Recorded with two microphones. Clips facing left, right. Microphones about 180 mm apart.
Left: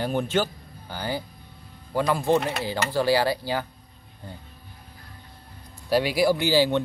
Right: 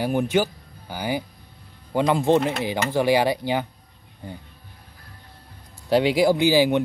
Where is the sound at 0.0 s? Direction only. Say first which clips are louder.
Right 3 dB; 10° right (ahead or behind).